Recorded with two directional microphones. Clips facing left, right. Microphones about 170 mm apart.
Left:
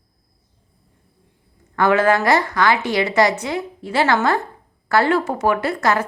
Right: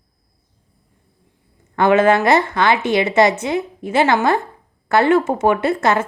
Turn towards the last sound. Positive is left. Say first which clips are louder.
# right 3 dB
turn(degrees=-25)  # may be behind; listen again after turning